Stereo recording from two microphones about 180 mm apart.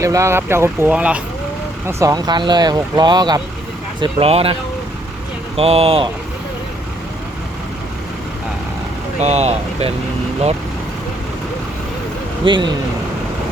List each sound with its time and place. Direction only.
0.0 s speech: 15° right (ahead or behind)
1.9 s speech: 15° right (ahead or behind)
4.0 s speech: 30° right (ahead or behind)
5.5 s speech: 35° right (ahead or behind)
9.2 s speech: 35° right (ahead or behind)
12.5 s speech: 25° right (ahead or behind)